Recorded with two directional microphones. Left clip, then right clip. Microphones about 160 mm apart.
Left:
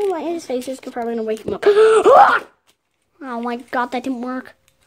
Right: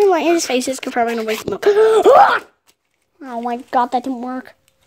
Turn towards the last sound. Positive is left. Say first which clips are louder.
# right 3 dB
turn(degrees=0)  # may be behind; listen again after turning